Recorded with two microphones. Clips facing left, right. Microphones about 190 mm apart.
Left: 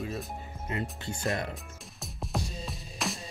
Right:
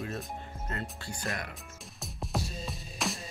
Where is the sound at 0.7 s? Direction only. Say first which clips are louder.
Left 5 dB; 20° left (ahead or behind).